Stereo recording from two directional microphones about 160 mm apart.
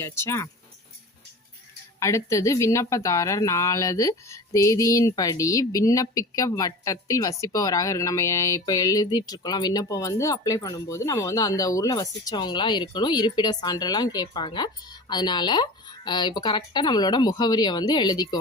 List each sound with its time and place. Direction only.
0.0 s speech: 15° left (ahead or behind)
2.0 s speech: 20° left (ahead or behind)